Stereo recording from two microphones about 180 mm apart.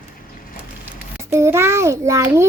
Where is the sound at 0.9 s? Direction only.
15° right (ahead or behind).